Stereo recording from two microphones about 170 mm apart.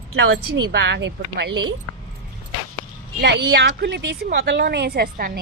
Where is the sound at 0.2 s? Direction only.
80° right.